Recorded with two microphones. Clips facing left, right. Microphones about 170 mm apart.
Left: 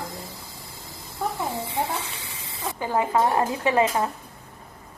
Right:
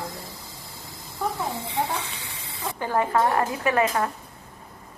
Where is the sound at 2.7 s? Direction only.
15° left (ahead or behind).